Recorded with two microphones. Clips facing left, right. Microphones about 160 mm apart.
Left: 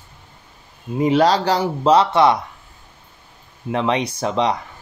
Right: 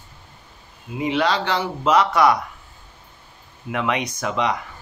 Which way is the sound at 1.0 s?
40° left (ahead or behind).